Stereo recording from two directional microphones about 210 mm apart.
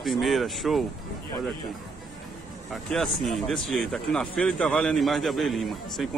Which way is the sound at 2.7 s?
Centre (ahead or behind).